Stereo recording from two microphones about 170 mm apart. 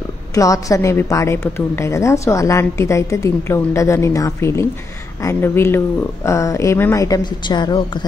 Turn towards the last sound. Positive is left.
turn(degrees=25)  # may be behind; listen again after turning